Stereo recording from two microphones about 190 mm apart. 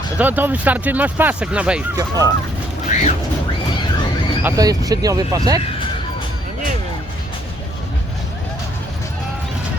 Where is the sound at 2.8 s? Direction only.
35° left (ahead or behind).